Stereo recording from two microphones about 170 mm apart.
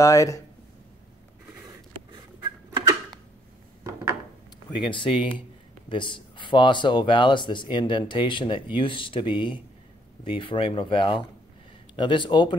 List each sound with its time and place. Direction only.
0.0 s speech: 20° left (ahead or behind)
2.4 s a sound: 25° right (ahead or behind)
4.8 s speech: 30° left (ahead or behind)